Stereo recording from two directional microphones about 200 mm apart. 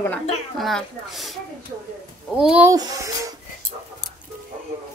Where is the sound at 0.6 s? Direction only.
Centre (ahead or behind).